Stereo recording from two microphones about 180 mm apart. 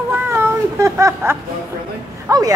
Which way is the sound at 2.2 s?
20° right (ahead or behind).